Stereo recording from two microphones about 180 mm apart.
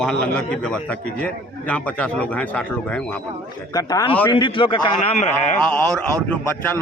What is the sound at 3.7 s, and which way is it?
A man's voice, 20° left (ahead or behind).